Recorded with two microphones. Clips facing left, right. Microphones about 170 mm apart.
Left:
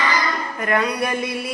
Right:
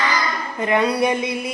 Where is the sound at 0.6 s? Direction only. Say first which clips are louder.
Right 4 dB; 20° right (ahead or behind).